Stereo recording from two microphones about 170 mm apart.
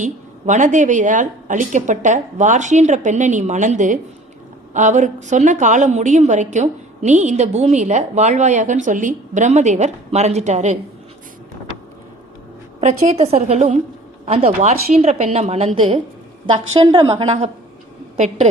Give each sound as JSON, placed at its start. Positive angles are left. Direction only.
{"t": 0.0, "sound": "a woman's voice", "side_deg": -45}
{"t": 12.8, "sound": "a woman's voice", "side_deg": -40}